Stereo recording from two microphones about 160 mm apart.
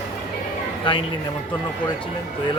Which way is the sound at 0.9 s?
30° left (ahead or behind).